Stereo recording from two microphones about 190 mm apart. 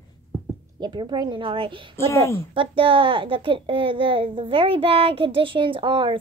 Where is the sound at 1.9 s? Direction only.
15° left (ahead or behind).